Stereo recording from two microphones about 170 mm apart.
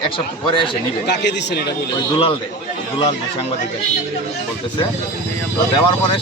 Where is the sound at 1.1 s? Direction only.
90° left.